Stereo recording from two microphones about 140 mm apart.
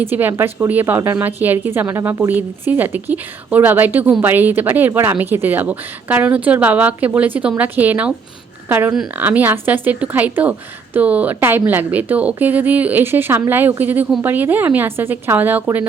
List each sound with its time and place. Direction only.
0.0 s speech: 15° right (ahead or behind)